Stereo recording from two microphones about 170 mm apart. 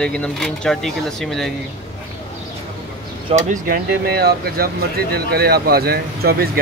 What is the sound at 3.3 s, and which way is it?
Speech, 50° right (ahead or behind).